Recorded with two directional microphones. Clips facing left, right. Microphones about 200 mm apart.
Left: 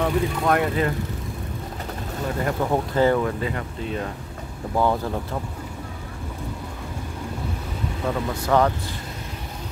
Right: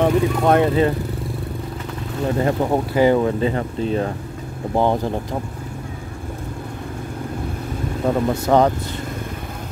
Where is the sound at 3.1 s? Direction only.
25° right (ahead or behind).